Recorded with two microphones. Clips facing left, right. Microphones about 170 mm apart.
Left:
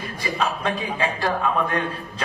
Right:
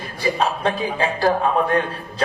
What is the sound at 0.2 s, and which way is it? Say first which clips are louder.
A man's voice: right 5 dB; 35° right (ahead or behind).